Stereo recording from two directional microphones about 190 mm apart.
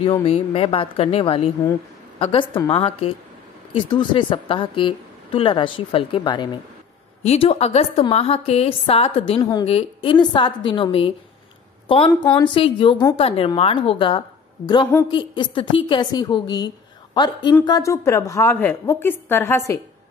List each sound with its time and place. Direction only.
0.2 s a woman's voice: 30° left (ahead or behind)
12.1 s a woman's voice: 20° left (ahead or behind)